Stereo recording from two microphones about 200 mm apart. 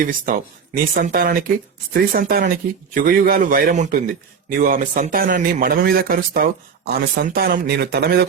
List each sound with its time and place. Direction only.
0.0 s a man's voice: 45° right (ahead or behind)